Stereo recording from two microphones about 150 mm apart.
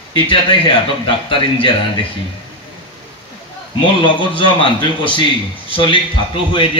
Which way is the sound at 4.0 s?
35° left (ahead or behind).